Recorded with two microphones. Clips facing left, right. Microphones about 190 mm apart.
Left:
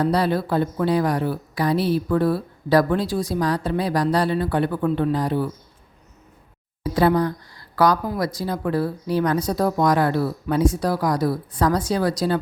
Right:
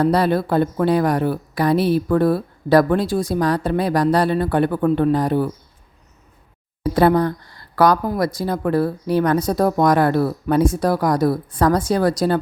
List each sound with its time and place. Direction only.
0.0 s a woman's voice: 55° right (ahead or behind)
6.9 s a woman's voice: 55° right (ahead or behind)